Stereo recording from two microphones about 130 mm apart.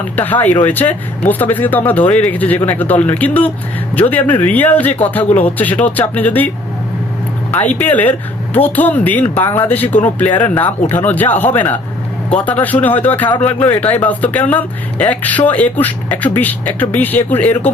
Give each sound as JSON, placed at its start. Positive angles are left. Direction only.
{"t": 0.2, "sound": "speech", "side_deg": 15}
{"t": 7.5, "sound": "speech", "side_deg": 15}